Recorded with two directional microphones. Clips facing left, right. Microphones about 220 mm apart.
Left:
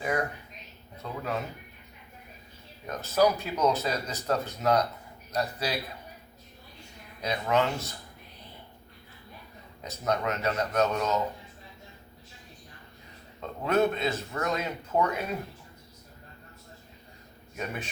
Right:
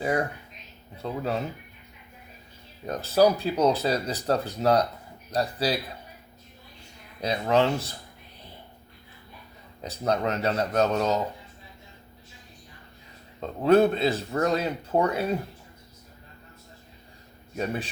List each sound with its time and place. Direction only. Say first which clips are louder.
0.0 s speech: right 3 dB; 30° right (ahead or behind)
2.8 s speech: right 4 dB; 30° right (ahead or behind)
7.2 s speech: right 4 dB; 30° right (ahead or behind)
9.8 s speech: right 3 dB; 30° right (ahead or behind)
13.4 s speech: right 6 dB; 35° right (ahead or behind)